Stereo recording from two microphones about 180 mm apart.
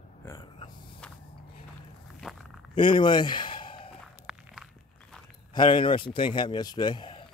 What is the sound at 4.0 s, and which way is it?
Walk, 5° right (ahead or behind).